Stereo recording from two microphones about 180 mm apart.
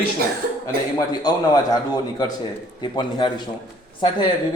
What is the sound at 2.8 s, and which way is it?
A man's voice, 25° left (ahead or behind).